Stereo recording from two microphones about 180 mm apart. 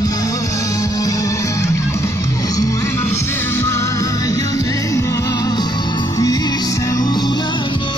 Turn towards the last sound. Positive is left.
turn(degrees=25)  # may be behind; listen again after turning